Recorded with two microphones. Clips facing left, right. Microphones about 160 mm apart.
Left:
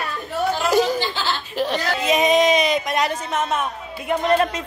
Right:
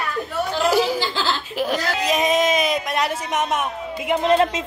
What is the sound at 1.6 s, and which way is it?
Speech, centre (ahead or behind).